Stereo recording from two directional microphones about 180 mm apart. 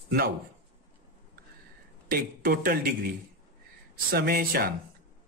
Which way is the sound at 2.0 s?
55° right (ahead or behind).